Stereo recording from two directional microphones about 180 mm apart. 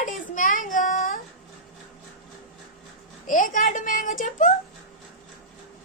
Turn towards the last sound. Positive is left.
turn(degrees=45)  # may be behind; listen again after turning